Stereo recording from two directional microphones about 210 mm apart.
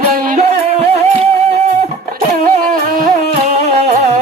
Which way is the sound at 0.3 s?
30° right (ahead or behind).